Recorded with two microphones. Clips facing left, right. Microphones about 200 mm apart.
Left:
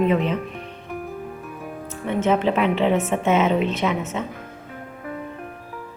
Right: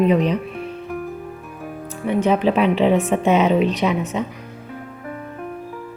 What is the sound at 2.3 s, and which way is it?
Speech, 15° right (ahead or behind).